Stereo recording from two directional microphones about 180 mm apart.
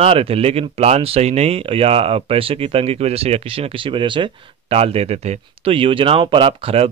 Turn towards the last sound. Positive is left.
turn(degrees=-35)  # may be behind; listen again after turning